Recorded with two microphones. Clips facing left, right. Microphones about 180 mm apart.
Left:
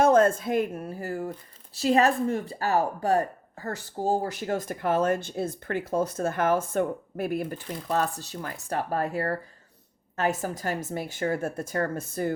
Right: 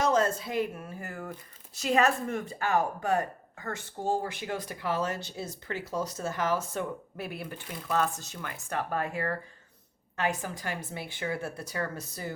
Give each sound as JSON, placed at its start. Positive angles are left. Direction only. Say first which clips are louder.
{"t": 0.0, "sound": "speech", "louder": "left 7 dB", "side_deg": 55}